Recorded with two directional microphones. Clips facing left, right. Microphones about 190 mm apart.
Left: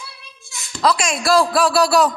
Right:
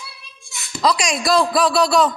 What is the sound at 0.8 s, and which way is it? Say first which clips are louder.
A man's voice: left 1 dB; 5° left (ahead or behind).